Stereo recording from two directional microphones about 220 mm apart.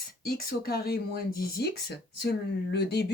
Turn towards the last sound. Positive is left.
turn(degrees=50)  # may be behind; listen again after turning